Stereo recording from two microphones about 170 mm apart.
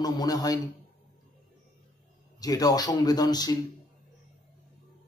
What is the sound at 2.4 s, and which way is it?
A man's voice, 20° left (ahead or behind).